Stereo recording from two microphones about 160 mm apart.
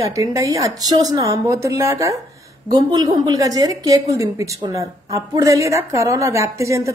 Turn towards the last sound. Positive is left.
turn(degrees=-20)  # may be behind; listen again after turning